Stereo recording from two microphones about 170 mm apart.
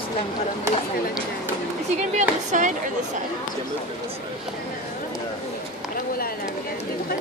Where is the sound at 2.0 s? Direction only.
45° right (ahead or behind).